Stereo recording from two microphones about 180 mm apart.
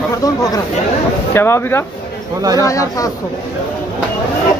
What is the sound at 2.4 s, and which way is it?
Speech, 20° right (ahead or behind).